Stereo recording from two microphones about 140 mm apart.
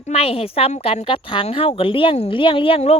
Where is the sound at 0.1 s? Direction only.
45° left (ahead or behind).